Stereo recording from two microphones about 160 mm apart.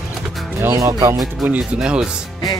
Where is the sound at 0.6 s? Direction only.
15° right (ahead or behind).